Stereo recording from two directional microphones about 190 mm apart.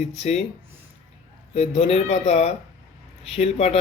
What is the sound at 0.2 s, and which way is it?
Speech, 35° left (ahead or behind).